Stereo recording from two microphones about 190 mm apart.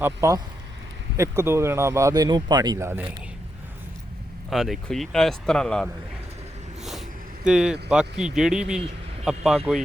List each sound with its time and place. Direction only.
0.0 s speech: 15° right (ahead or behind)
4.4 s speech: centre (ahead or behind)
7.4 s speech: 5° right (ahead or behind)